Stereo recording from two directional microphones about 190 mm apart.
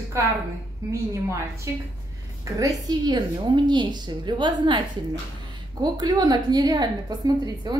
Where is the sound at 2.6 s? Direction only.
20° right (ahead or behind).